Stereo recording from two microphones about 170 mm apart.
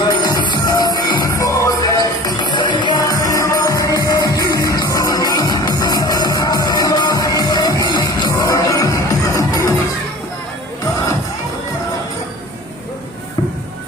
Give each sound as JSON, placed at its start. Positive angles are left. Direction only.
{"t": 0.0, "sound": "music", "side_deg": 25}